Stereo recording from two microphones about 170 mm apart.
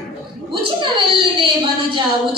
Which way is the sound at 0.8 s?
30° right (ahead or behind).